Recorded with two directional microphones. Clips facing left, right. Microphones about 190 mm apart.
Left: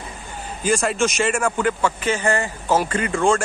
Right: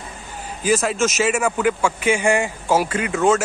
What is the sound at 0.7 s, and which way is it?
A man's voice, centre (ahead or behind).